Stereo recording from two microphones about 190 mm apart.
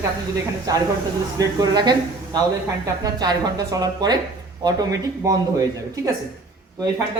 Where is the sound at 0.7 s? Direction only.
20° right (ahead or behind).